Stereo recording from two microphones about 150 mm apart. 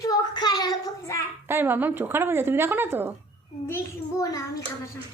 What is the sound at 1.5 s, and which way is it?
Speech, 15° right (ahead or behind).